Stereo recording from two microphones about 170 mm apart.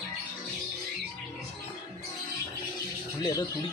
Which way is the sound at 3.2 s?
20° left (ahead or behind).